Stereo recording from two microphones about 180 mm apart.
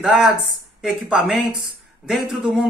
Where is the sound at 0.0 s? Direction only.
Centre (ahead or behind).